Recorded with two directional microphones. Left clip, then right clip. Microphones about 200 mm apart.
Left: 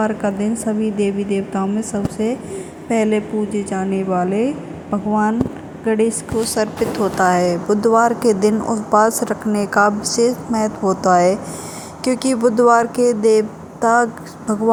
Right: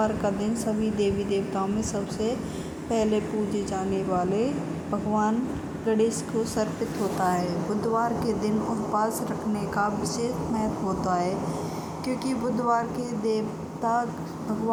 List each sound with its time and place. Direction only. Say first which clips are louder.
0.0 s a woman's voice: left 6 dB; 20° left (ahead or behind)
7.2 s a woman's voice: left 11 dB; 55° left (ahead or behind)